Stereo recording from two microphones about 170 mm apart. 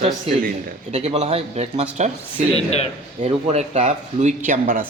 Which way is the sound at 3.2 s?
40° right (ahead or behind).